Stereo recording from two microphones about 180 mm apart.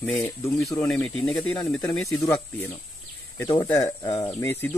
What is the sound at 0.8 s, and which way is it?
Speech, 5° left (ahead or behind).